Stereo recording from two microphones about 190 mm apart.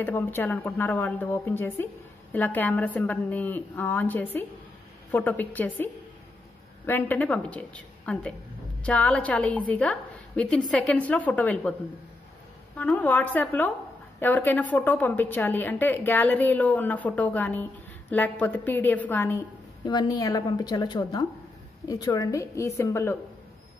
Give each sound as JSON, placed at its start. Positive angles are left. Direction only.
{"t": 0.0, "sound": "a woman's voice", "side_deg": 10}
{"t": 6.9, "sound": "a woman's voice", "side_deg": 10}
{"t": 12.7, "sound": "a woman's voice", "side_deg": 10}